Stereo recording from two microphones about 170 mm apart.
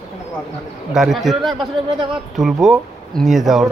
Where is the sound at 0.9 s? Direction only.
Centre (ahead or behind).